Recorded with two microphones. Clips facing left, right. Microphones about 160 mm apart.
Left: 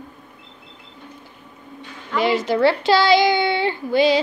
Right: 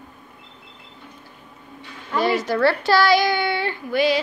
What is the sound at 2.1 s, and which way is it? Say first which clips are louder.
Speech: left 2 dB; 20° left (ahead or behind).